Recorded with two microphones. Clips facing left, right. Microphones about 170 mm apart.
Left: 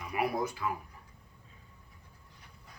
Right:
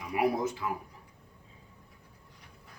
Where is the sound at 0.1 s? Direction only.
20° right (ahead or behind).